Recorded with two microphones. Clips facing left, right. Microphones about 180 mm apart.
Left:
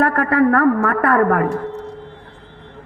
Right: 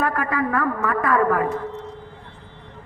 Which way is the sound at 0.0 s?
65° left (ahead or behind).